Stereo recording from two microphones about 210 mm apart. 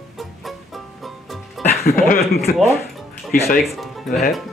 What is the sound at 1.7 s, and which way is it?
Speech, 45° left (ahead or behind).